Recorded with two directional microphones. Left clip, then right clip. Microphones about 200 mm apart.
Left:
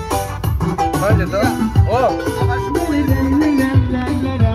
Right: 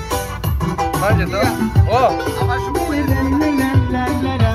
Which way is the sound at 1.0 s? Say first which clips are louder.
Even; 35° left (ahead or behind).